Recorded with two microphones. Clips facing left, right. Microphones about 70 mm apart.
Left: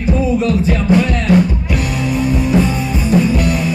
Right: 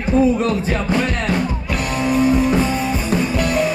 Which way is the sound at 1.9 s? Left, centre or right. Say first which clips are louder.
Right 4 dB; right.